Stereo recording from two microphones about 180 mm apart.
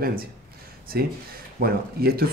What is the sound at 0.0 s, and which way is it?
Speech, 55° right (ahead or behind).